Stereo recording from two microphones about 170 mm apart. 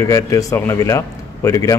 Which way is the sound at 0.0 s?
20° left (ahead or behind).